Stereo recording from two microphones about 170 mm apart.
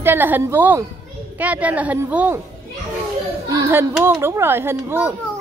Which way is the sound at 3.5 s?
20° right (ahead or behind).